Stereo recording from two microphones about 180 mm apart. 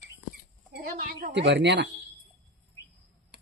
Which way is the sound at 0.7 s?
55° right (ahead or behind).